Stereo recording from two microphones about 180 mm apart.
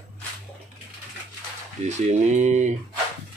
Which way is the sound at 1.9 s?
40° right (ahead or behind).